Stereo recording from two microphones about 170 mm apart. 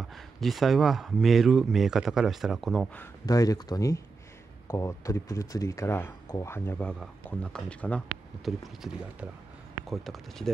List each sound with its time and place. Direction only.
0.0 s speech: centre (ahead or behind)
3.3 s speech: 20° left (ahead or behind); by 10.5 s centre (ahead or behind)